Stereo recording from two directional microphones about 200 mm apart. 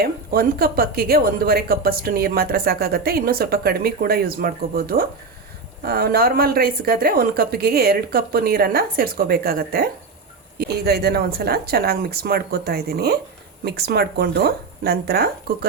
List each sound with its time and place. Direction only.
0.0 s a woman's voice: 50° right (ahead or behind)